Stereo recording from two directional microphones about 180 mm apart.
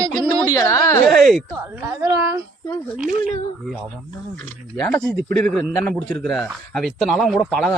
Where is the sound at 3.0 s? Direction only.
50° right (ahead or behind).